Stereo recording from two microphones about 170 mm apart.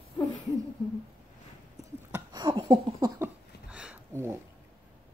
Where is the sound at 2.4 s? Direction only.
25° right (ahead or behind).